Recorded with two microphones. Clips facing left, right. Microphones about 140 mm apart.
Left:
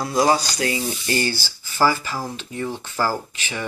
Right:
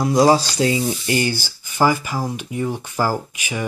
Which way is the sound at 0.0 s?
20° right (ahead or behind).